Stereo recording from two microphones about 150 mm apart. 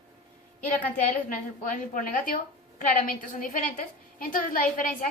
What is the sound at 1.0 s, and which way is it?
A woman's voice, 60° left (ahead or behind).